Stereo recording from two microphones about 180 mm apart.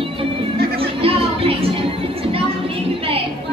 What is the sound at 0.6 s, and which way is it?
Chatter, 60° right (ahead or behind).